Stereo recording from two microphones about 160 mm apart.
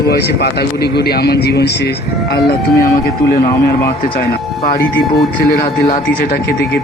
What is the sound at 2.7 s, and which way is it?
Speech, 20° left (ahead or behind).